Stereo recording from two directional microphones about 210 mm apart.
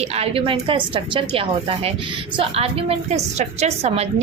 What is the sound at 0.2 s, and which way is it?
A woman's voice, 30° right (ahead or behind).